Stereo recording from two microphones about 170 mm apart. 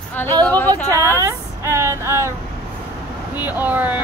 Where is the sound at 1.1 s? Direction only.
15° right (ahead or behind).